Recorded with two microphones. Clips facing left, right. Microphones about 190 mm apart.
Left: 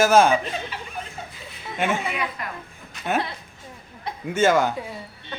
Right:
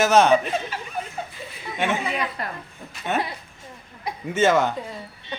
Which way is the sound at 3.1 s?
5° left (ahead or behind).